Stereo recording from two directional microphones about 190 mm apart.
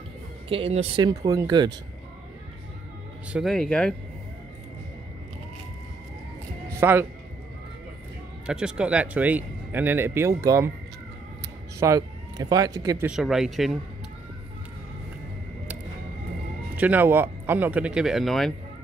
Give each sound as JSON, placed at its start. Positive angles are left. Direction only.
{"t": 0.5, "sound": "speech", "side_deg": -30}
{"t": 3.3, "sound": "speech", "side_deg": 0}
{"t": 6.8, "sound": "speech", "side_deg": -10}
{"t": 8.5, "sound": "speech", "side_deg": -5}
{"t": 11.8, "sound": "speech", "side_deg": -20}
{"t": 13.1, "sound": "speech", "side_deg": 0}
{"t": 16.7, "sound": "speech", "side_deg": -10}